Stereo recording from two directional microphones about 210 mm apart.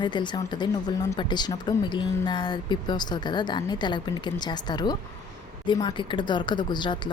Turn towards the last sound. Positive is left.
turn(degrees=20)  # may be behind; listen again after turning